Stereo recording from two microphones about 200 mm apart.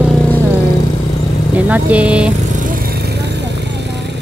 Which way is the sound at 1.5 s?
5° right (ahead or behind).